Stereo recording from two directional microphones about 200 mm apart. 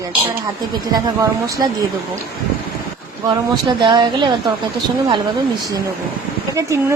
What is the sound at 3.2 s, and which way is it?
Speech, 20° right (ahead or behind).